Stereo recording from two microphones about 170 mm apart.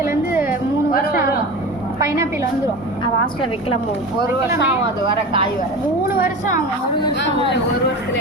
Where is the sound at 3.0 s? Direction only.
30° left (ahead or behind).